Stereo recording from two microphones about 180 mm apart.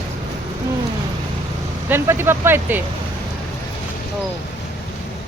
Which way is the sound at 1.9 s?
15° right (ahead or behind).